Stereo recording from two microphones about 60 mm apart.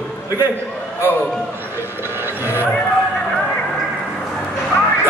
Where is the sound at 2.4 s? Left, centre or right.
Right.